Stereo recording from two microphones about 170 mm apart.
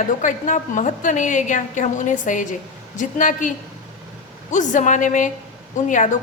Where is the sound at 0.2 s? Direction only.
50° left (ahead or behind).